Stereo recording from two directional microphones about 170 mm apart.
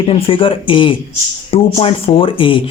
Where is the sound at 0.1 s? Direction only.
30° left (ahead or behind).